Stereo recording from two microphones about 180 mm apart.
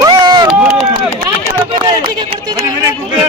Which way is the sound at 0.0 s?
25° right (ahead or behind).